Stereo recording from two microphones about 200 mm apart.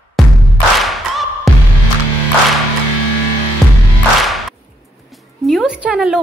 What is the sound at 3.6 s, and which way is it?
Music, centre (ahead or behind).